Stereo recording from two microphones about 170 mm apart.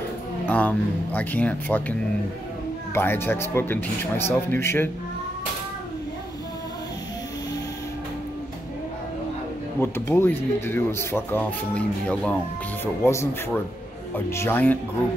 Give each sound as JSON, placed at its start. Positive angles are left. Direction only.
{"t": 0.5, "sound": "speech", "side_deg": 10}
{"t": 9.8, "sound": "speech", "side_deg": 15}